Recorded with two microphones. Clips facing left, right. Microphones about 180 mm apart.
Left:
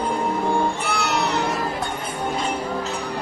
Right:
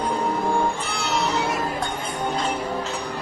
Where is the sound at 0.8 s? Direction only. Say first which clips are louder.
Left 2 dB; 65° left (ahead or behind).